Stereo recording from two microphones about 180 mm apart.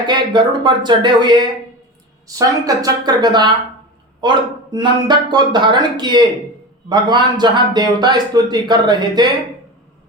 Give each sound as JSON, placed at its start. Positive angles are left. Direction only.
{"t": 0.0, "sound": "a man's voice", "side_deg": -25}